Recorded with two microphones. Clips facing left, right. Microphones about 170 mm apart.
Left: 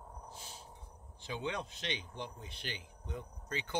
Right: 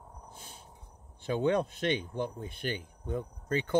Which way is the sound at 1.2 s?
55° right (ahead or behind).